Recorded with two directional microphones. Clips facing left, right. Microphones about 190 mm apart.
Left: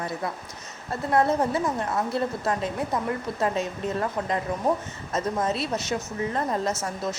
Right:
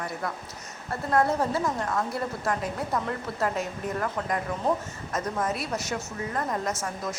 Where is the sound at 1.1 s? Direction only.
20° left (ahead or behind).